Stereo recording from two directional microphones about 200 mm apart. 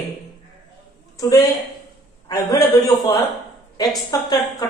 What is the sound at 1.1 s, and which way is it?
A woman's voice, 15° left (ahead or behind).